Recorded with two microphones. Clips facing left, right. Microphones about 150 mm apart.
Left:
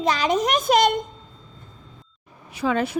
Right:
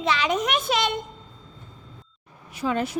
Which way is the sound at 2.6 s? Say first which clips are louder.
Left 3 dB; 90° left.